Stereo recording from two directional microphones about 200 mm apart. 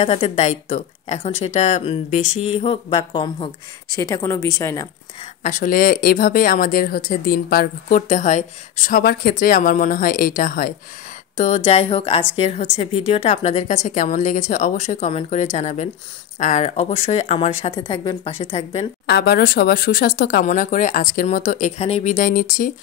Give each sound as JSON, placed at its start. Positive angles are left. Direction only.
{"t": 0.0, "sound": "a woman's voice", "side_deg": 30}
{"t": 5.4, "sound": "a woman's voice", "side_deg": 40}
{"t": 19.0, "sound": "speech", "side_deg": 55}